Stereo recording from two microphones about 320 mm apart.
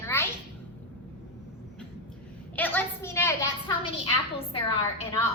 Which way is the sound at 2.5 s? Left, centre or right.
Centre.